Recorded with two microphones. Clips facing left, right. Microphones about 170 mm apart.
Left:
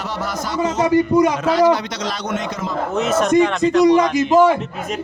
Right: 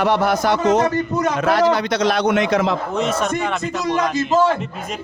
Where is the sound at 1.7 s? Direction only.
60° right (ahead or behind); by 2.7 s 75° right (ahead or behind).